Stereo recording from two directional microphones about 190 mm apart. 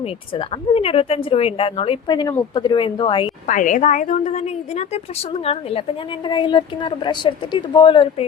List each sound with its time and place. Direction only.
0.3 s a woman's voice: 30° left (ahead or behind)
3.4 s a woman's voice: 40° left (ahead or behind)
6.2 s a woman's voice: 25° left (ahead or behind)